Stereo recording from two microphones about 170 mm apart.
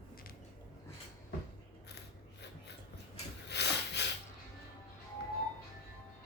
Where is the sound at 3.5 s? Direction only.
80° left.